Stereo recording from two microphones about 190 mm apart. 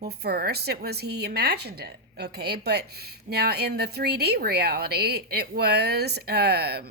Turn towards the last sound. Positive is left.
turn(degrees=-55)  # may be behind; listen again after turning